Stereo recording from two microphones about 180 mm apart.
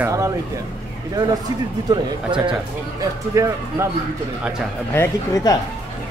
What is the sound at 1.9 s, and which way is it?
Speech, 25° right (ahead or behind).